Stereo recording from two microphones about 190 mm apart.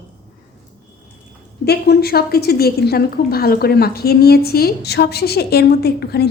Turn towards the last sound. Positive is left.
turn(degrees=55)  # may be behind; listen again after turning